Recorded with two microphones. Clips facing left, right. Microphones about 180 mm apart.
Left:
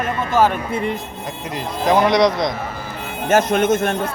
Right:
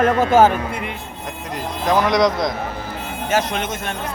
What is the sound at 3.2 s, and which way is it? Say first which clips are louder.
Speech: left 6 dB; 50° left (ahead or behind).